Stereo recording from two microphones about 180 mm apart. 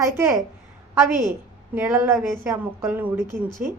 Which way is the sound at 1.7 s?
15° right (ahead or behind).